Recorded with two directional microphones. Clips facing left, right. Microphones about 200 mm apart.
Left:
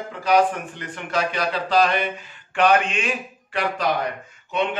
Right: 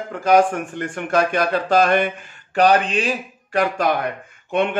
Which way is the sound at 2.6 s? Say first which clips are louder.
Right 3 dB; 35° right (ahead or behind).